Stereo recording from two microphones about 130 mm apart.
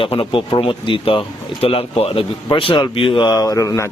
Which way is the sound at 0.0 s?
45° left (ahead or behind).